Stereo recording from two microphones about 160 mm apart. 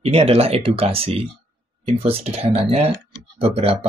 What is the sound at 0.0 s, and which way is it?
Speech, 40° right (ahead or behind).